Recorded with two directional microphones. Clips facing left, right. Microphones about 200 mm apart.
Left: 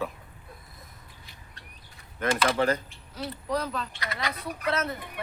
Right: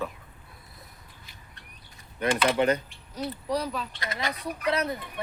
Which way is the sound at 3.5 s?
10° right (ahead or behind).